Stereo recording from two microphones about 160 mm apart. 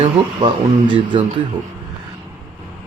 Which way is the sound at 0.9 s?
30° right (ahead or behind).